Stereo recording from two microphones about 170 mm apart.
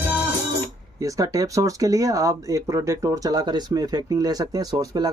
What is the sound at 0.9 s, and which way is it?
Speech, 20° right (ahead or behind).